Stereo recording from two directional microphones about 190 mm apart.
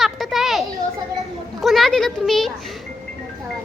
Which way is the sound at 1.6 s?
Centre (ahead or behind).